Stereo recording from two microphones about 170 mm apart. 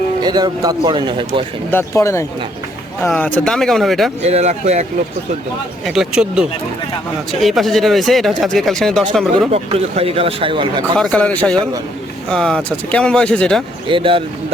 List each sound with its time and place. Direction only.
0.2 s a man's voice: 25° right (ahead or behind)
1.7 s speech: 15° left (ahead or behind); by 4.1 s centre (ahead or behind)
4.2 s speech: 40° right (ahead or behind)
5.8 s speech: 5° right (ahead or behind)
9.5 s speech: 35° right (ahead or behind)
10.9 s speech: 5° left (ahead or behind)
13.8 s speech: 30° right (ahead or behind)